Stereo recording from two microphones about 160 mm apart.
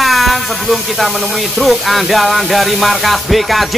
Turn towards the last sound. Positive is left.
turn(degrees=0)  # may be behind; listen again after turning